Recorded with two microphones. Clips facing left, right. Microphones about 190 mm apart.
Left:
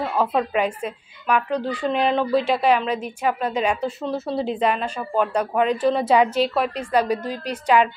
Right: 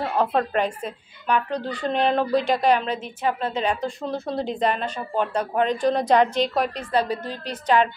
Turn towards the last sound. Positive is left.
turn(degrees=10)  # may be behind; listen again after turning